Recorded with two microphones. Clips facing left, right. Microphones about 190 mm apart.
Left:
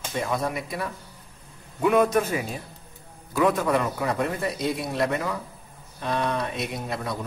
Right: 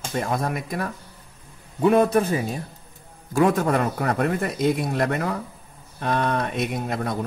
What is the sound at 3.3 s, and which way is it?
A man's voice, 50° right (ahead or behind).